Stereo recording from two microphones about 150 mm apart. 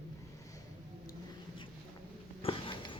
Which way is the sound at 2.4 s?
35° left (ahead or behind).